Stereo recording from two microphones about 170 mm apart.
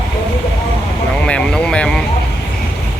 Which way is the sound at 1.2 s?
5° left (ahead or behind).